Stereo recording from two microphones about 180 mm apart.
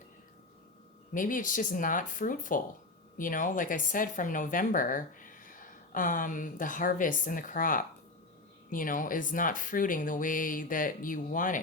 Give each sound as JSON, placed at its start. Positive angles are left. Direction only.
{"t": 1.1, "sound": "speech", "side_deg": 50}